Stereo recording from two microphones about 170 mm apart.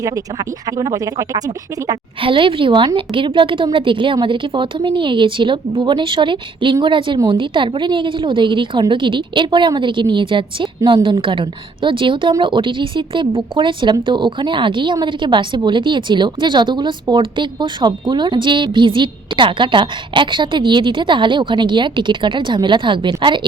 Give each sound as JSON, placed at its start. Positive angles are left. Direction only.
{"t": 0.0, "sound": "speech", "side_deg": -20}